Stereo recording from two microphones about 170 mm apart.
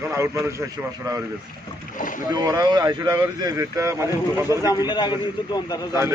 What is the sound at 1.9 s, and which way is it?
Boat, 50° left (ahead or behind).